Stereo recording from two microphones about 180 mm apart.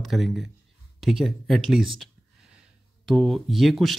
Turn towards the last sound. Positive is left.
turn(degrees=0)  # may be behind; listen again after turning